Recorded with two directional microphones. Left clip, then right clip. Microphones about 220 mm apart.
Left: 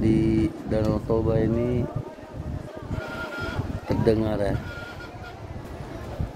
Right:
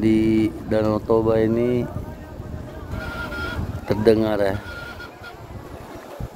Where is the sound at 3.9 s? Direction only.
15° right (ahead or behind).